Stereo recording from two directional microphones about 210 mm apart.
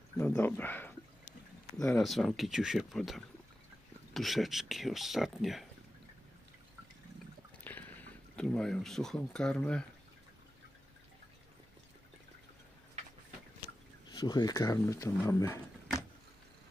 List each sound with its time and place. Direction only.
0.2 s speech: 10° left (ahead or behind)
7.6 s a sound: 10° left (ahead or behind)
8.4 s speech: 5° left (ahead or behind)
14.0 s speech: 20° left (ahead or behind)